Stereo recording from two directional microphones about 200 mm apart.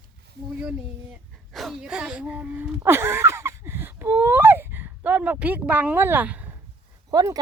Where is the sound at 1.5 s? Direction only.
Centre (ahead or behind).